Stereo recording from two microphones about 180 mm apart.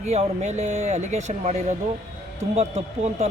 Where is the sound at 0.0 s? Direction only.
35° right (ahead or behind).